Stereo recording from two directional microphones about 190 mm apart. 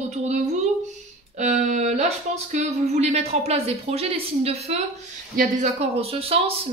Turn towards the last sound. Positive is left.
turn(degrees=-30)  # may be behind; listen again after turning